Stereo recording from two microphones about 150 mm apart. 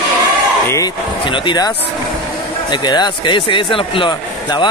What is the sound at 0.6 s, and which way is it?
Slam, 20° left (ahead or behind).